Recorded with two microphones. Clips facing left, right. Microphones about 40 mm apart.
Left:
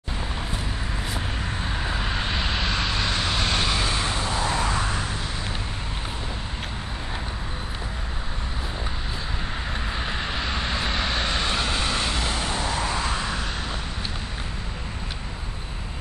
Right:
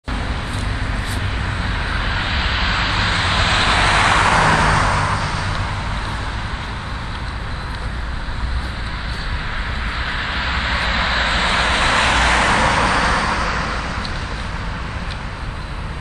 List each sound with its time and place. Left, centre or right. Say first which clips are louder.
1.6 s vehicle: right 5 dB; right
9.9 s vehicle: right 7 dB; right